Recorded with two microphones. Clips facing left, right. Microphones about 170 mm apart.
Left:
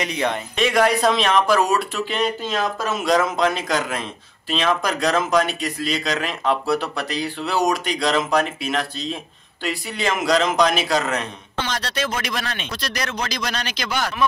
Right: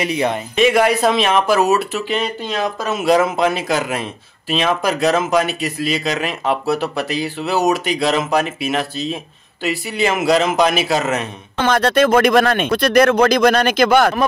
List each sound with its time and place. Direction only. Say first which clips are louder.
0.0 s speech: right 4 dB; 5° right (ahead or behind)
11.5 s speech: right 12 dB; 50° right (ahead or behind)